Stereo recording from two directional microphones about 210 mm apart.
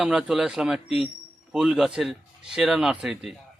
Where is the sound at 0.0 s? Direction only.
Centre (ahead or behind).